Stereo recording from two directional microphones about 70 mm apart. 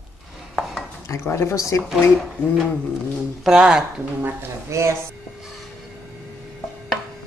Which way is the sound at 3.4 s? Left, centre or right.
Centre.